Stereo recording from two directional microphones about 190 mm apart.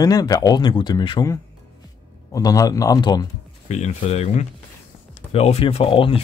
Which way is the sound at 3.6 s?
35° left (ahead or behind).